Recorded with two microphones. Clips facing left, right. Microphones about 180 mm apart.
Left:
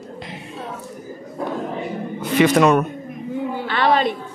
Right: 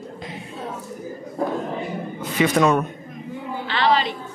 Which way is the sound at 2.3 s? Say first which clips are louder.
Left 4 dB; 65° left (ahead or behind).